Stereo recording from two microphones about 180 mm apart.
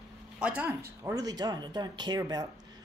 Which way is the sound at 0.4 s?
10° right (ahead or behind).